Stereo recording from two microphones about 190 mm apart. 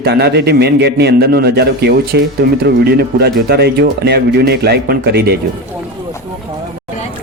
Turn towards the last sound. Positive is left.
turn(degrees=-55)  # may be behind; listen again after turning